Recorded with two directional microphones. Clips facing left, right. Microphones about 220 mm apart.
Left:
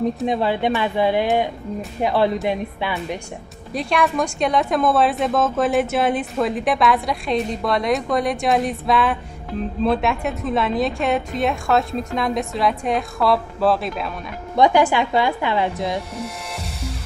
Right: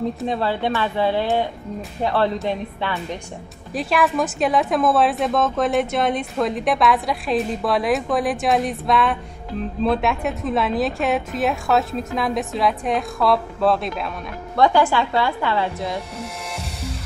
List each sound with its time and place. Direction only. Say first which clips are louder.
0.2 s a woman's voice: left 2 dB; 15° left (ahead or behind)
3.7 s a woman's voice: even; 5° right (ahead or behind)
14.6 s a woman's voice: left 1 dB; 15° left (ahead or behind)